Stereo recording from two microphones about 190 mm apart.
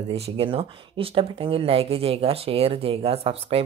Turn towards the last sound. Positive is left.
turn(degrees=-30)  # may be behind; listen again after turning